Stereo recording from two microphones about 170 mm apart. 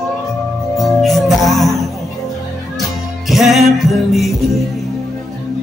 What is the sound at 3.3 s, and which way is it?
Music, centre (ahead or behind).